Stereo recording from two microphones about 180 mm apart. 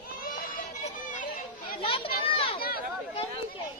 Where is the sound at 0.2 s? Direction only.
50° left (ahead or behind).